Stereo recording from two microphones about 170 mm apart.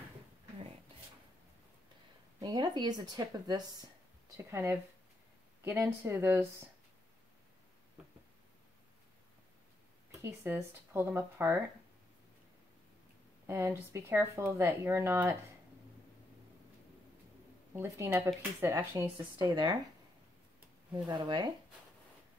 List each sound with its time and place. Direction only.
2.4 s speech: 25° right (ahead or behind)
10.2 s speech: 15° right (ahead or behind)
13.5 s speech: 15° right (ahead or behind)
17.7 s speech: 15° right (ahead or behind)
20.9 s speech: 25° right (ahead or behind)